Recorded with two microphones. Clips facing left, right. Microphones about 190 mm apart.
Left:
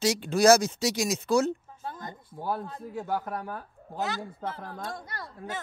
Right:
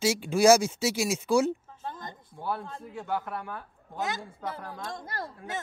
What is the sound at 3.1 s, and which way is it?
Speech, 40° left (ahead or behind).